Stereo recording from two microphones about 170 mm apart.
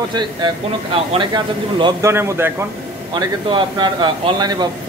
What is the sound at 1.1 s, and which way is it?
Speech, 25° right (ahead or behind).